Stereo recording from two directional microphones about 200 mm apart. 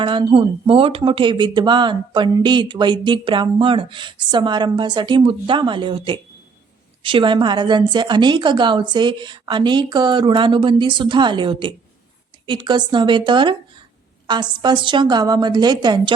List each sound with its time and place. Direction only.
0.0 s speech: 25° right (ahead or behind)